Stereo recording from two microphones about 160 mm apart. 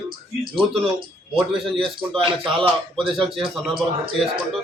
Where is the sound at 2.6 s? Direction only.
30° right (ahead or behind).